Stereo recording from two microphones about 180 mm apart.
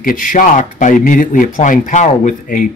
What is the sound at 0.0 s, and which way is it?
Speech, 50° left (ahead or behind).